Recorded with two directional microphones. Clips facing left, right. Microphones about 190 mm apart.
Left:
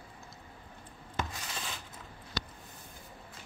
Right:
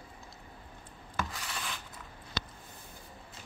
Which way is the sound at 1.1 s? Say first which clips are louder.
Even; 25° left (ahead or behind).